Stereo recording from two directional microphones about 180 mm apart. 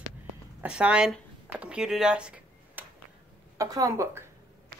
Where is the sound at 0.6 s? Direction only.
5° right (ahead or behind).